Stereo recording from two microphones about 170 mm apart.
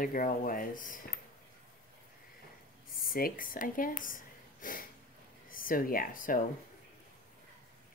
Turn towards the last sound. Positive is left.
turn(degrees=55)  # may be behind; listen again after turning